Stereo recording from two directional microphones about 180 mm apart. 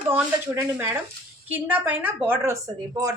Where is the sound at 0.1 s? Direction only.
10° right (ahead or behind).